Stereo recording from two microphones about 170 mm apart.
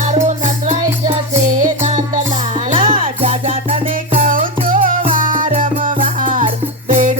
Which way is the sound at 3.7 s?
55° right (ahead or behind).